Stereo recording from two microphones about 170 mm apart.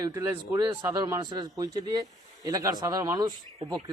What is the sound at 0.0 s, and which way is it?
A man's voice, 20° right (ahead or behind).